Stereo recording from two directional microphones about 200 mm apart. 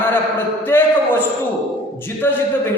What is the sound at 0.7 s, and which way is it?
Speech, 10° left (ahead or behind).